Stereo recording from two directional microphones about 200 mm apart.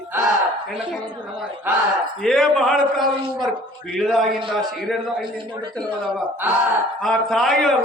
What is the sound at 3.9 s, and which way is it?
A man's voice, centre (ahead or behind).